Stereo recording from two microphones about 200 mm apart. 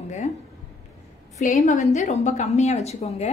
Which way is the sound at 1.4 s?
35° left (ahead or behind).